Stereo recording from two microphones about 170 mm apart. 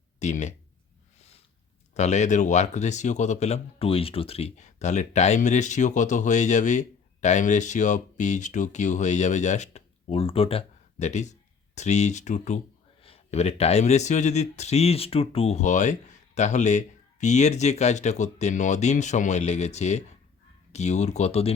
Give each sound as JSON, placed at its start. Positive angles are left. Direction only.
{"t": 0.2, "sound": "speech", "side_deg": 45}
{"t": 1.9, "sound": "speech", "side_deg": 40}